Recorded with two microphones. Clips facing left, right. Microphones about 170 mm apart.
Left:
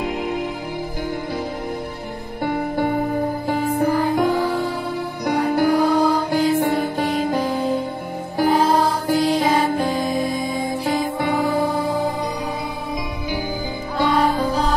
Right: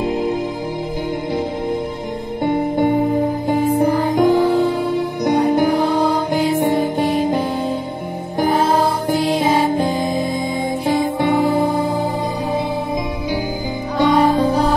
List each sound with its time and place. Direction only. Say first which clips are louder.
0.0 s music: right 5 dB; 35° right (ahead or behind)
2.4 s music: right 4 dB; 20° right (ahead or behind)
9.0 s music: right 1 dB; 15° right (ahead or behind)
13.9 s music: right 4 dB; 20° right (ahead or behind)